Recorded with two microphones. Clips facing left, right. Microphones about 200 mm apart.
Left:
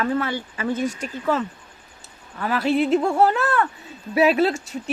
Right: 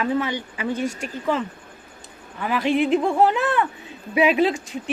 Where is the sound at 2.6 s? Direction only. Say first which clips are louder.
Even; 40° left (ahead or behind).